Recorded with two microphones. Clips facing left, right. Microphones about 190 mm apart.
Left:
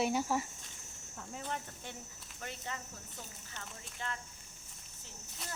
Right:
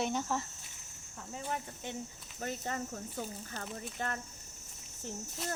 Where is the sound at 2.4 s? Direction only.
45° right (ahead or behind).